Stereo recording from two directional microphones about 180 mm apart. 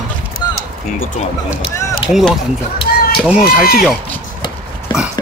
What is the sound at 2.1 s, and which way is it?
Speech, centre (ahead or behind).